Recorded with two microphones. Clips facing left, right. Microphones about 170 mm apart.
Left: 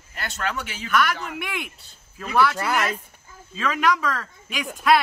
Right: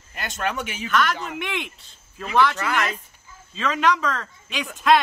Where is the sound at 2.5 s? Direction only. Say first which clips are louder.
Left 1 dB; 35° left (ahead or behind).